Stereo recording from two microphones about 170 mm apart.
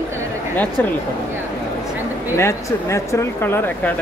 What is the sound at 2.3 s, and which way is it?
Speech, 15° left (ahead or behind).